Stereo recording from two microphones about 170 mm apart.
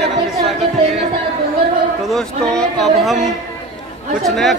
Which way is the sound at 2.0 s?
5° left (ahead or behind).